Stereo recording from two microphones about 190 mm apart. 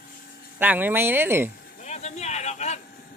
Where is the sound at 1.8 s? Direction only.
35° left (ahead or behind).